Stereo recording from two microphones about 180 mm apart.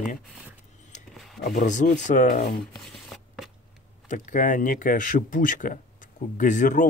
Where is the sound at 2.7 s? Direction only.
Centre (ahead or behind).